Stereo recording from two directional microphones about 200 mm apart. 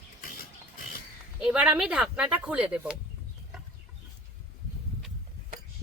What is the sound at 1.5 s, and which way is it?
Speech, 5° right (ahead or behind).